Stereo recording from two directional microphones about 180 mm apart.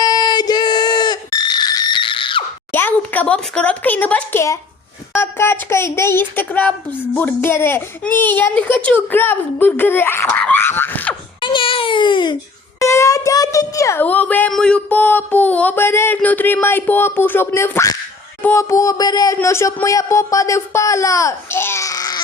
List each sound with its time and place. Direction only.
0.0 s a sound: 25° left (ahead or behind)
2.7 s speech: 10° left (ahead or behind)
11.3 s baby cry: 25° left (ahead or behind)
12.8 s speech: 15° left (ahead or behind)